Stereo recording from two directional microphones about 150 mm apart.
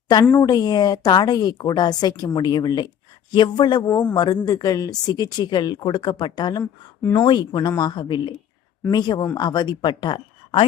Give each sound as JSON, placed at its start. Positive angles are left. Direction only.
{"t": 0.3, "sound": "speech", "side_deg": 25}
{"t": 3.8, "sound": "speech", "side_deg": 10}
{"t": 4.1, "sound": "speech", "side_deg": 25}